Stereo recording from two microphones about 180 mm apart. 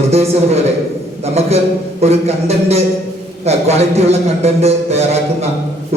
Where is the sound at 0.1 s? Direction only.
35° right (ahead or behind).